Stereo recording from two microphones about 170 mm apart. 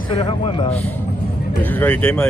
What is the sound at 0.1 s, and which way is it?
Speech, 30° left (ahead or behind).